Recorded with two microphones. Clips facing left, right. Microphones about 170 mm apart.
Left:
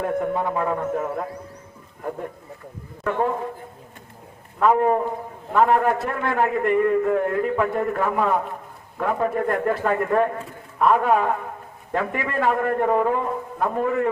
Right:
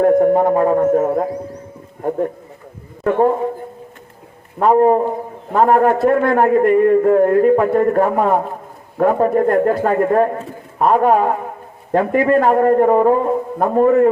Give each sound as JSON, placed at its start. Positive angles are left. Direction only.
{"t": 0.0, "sound": "a man's voice", "side_deg": -45}
{"t": 3.0, "sound": "a man's voice", "side_deg": -45}
{"t": 4.6, "sound": "a man's voice", "side_deg": -35}
{"t": 5.5, "sound": "a man's voice", "side_deg": -45}